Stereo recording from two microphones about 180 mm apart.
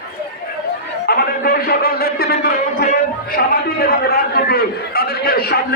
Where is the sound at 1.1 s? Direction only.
55° left (ahead or behind).